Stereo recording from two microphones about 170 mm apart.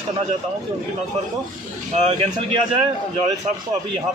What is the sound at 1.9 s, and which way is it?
Speech, 35° right (ahead or behind).